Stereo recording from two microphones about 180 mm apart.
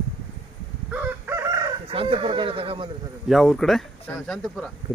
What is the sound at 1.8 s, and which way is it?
Speech, 30° right (ahead or behind).